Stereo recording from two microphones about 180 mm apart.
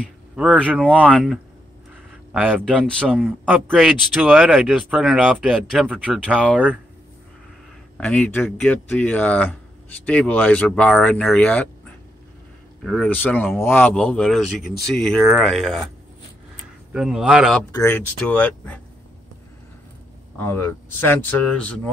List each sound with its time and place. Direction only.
0.0 s speech: 5° right (ahead or behind)
2.8 s speech: 5° left (ahead or behind)
8.0 s speech: 5° left (ahead or behind)
12.8 s speech: 5° left (ahead or behind)
14.7 s speech: 65° left (ahead or behind)
15.3 s speech: centre (ahead or behind)
16.9 s speech: 5° right (ahead or behind)
17.7 s speech: 10° left (ahead or behind)
20.3 s speech: 10° left (ahead or behind)